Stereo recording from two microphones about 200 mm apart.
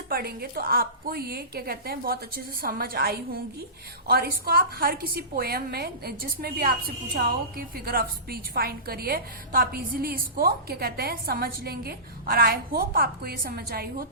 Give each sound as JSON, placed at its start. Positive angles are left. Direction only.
{"t": 0.1, "sound": "a woman's voice", "side_deg": -50}